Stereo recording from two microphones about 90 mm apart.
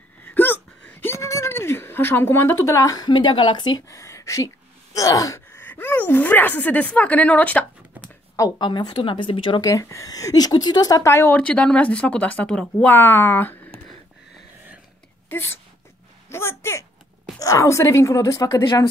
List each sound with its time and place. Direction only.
0.2 s a sound: 20° left (ahead or behind)
3.0 s a woman's voice: 55° left (ahead or behind)
3.9 s speech: 35° left (ahead or behind); by 7.6 s 15° left (ahead or behind)
8.4 s a woman's voice: 50° left (ahead or behind); by 9.6 s 65° left (ahead or behind)
9.6 s speech: 35° left (ahead or behind)
11.3 s speech: 15° left (ahead or behind)
15.2 s speech: 25° left (ahead or behind)